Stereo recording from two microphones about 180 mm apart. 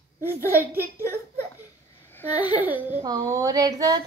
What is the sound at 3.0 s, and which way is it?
Child singing, 20° right (ahead or behind).